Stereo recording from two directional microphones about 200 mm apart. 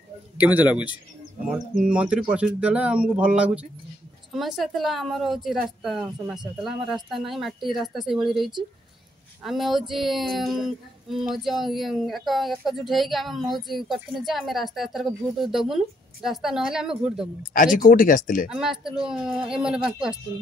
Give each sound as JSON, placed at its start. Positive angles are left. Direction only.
{"t": 0.4, "sound": "speech", "side_deg": -10}
{"t": 17.7, "sound": "speech", "side_deg": 45}
{"t": 18.5, "sound": "speech", "side_deg": 0}